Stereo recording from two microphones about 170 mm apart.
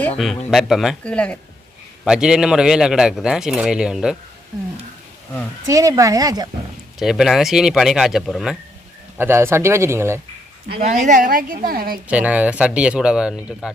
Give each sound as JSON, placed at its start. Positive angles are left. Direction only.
{"t": 0.2, "sound": "a man's voice", "side_deg": 0}
{"t": 2.0, "sound": "a man's voice", "side_deg": -5}
{"t": 5.6, "sound": "speech", "side_deg": -20}
{"t": 7.0, "sound": "a man's voice", "side_deg": 0}
{"t": 9.1, "sound": "speech", "side_deg": -15}
{"t": 10.8, "sound": "a woman's voice", "side_deg": -45}
{"t": 12.0, "sound": "speech", "side_deg": -10}